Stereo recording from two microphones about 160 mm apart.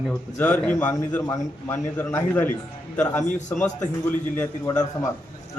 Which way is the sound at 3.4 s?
50° left (ahead or behind).